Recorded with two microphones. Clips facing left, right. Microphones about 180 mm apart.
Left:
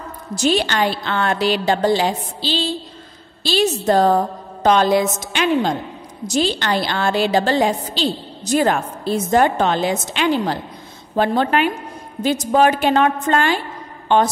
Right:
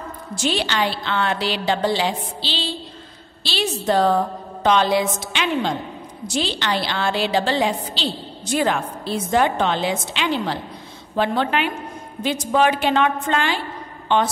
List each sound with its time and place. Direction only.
0.3 s a woman's voice: 40° left (ahead or behind)